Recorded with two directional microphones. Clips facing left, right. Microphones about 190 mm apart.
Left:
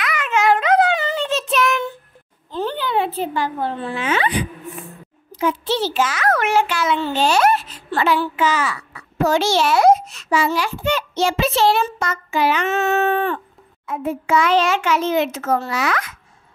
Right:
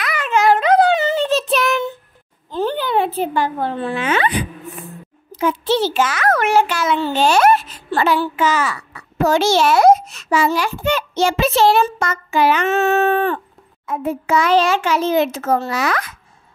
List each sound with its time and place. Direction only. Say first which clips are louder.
0.0 s a sound: right 2 dB; 35° right (ahead or behind)
1.2 s child singing: right 2 dB; 35° right (ahead or behind)
2.5 s a child's voice: right 3 dB; 45° right (ahead or behind)
5.3 s a child's voice: right 3 dB; 50° right (ahead or behind)
6.4 s a child's voice: right 2 dB; 40° right (ahead or behind)
7.9 s a child's voice: right 2 dB; 40° right (ahead or behind)
12.6 s a child's voice: right 3 dB; 35° right (ahead or behind)